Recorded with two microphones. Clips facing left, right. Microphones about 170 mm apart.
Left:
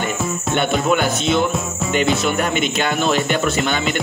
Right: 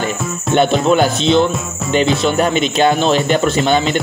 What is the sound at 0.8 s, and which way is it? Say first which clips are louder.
Speech: right 5 dB; 30° right (ahead or behind).